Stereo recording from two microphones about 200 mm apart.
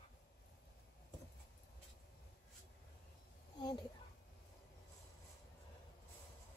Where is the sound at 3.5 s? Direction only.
20° left (ahead or behind).